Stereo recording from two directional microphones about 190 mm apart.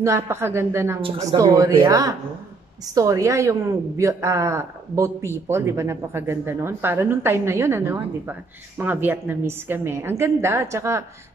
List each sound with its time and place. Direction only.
0.0 s speech: 15° right (ahead or behind)